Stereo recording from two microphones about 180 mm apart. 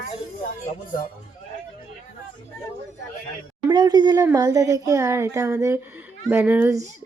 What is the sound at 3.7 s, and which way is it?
Speech, 25° right (ahead or behind).